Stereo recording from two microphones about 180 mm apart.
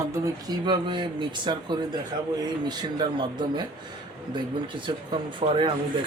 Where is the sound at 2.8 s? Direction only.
25° right (ahead or behind).